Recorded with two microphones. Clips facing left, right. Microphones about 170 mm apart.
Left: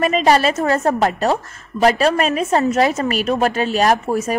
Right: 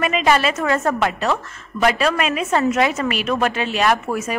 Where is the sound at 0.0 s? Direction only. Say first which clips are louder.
Left 3 dB; 40° left (ahead or behind).